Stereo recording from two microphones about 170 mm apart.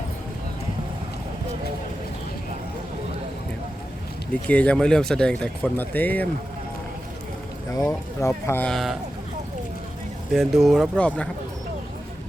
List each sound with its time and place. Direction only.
4.4 s speech: 10° left (ahead or behind)
7.7 s speech: 20° left (ahead or behind); by 9.0 s centre (ahead or behind)
10.3 s speech: centre (ahead or behind)